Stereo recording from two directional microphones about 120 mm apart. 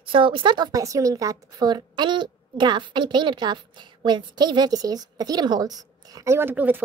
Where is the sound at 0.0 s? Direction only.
45° right (ahead or behind).